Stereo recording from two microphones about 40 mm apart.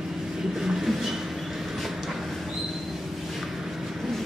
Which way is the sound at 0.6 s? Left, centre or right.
Centre.